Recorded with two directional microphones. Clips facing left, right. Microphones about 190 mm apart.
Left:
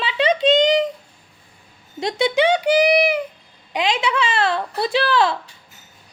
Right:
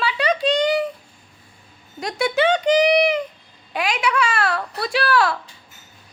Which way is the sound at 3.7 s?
20° left (ahead or behind).